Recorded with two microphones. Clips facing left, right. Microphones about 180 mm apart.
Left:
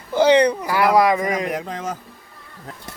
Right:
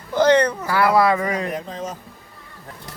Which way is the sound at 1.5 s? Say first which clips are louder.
Left 2 dB; 85° left.